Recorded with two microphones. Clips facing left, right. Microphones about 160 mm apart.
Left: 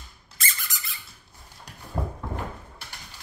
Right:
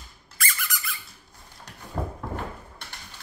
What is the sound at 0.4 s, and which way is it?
Squeak, 25° left (ahead or behind).